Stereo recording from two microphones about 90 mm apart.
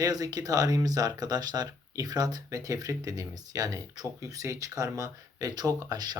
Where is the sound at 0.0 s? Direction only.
40° right (ahead or behind).